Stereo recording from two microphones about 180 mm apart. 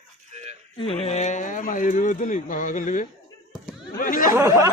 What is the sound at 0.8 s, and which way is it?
Speech, 30° left (ahead or behind).